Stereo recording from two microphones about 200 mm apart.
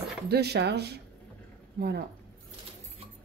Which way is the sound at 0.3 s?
55° right (ahead or behind).